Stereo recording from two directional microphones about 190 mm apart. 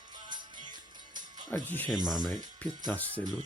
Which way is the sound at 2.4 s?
20° right (ahead or behind).